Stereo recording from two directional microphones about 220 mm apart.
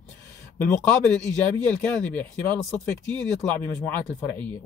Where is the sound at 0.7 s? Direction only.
5° left (ahead or behind).